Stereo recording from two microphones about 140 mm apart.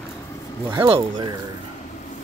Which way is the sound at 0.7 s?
40° right (ahead or behind).